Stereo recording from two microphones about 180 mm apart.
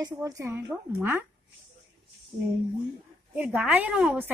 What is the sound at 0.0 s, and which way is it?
A woman's voice, 20° right (ahead or behind).